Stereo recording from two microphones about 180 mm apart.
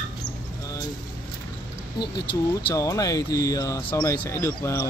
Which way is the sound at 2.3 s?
25° left (ahead or behind).